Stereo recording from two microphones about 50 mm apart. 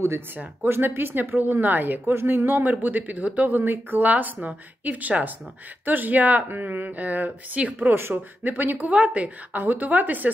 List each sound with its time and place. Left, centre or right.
0.7 s a woman's voice: right
2.0 s a woman's voice: right
4.1 s a woman's voice: right